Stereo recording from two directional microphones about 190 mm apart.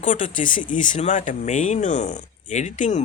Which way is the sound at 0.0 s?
40° left (ahead or behind).